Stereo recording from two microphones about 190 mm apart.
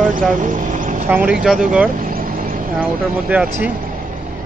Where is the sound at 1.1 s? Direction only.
5° right (ahead or behind).